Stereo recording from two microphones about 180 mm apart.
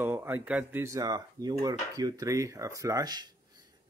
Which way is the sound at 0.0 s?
10° right (ahead or behind).